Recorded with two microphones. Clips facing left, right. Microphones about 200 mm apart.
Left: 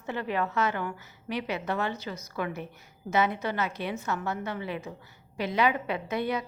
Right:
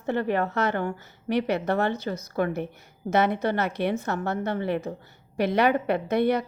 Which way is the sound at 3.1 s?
65° right (ahead or behind).